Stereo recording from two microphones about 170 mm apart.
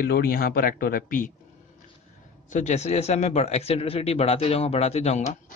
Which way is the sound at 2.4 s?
45° left (ahead or behind).